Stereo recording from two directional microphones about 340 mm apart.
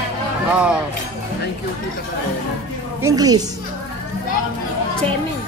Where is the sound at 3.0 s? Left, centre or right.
Centre.